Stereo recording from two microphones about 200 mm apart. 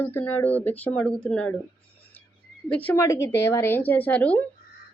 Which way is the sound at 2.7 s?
5° left (ahead or behind).